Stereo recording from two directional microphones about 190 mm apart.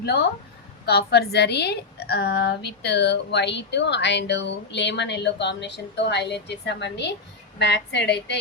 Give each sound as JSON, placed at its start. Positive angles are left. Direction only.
{"t": 0.0, "sound": "a woman's voice", "side_deg": 60}